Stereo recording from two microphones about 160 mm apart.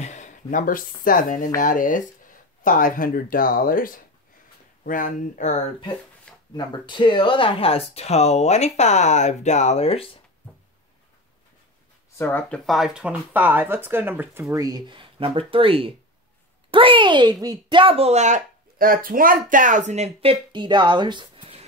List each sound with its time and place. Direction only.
0.0 s speech: 50° left (ahead or behind)
6.5 s speech: 30° left (ahead or behind)
12.2 s speech: 10° left (ahead or behind); by 14.4 s 10° right (ahead or behind)
14.5 s speech: 25° right (ahead or behind)